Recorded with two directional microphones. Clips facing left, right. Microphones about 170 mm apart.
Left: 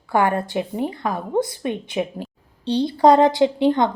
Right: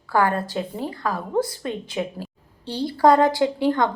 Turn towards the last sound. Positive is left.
turn(degrees=20)  # may be behind; listen again after turning